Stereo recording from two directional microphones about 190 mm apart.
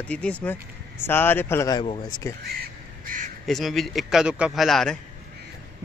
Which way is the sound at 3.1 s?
45° right (ahead or behind).